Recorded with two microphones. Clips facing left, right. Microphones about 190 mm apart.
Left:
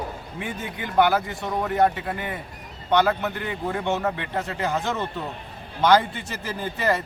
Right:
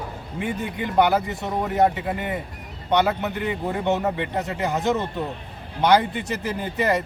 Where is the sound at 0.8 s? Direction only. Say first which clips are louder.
Even; 20° right (ahead or behind).